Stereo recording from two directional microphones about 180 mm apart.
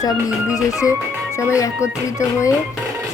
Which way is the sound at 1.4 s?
15° left (ahead or behind).